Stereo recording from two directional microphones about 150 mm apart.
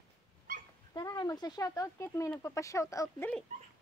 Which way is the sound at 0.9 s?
25° left (ahead or behind).